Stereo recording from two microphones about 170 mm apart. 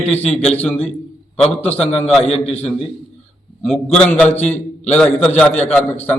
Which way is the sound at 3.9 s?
5° left (ahead or behind).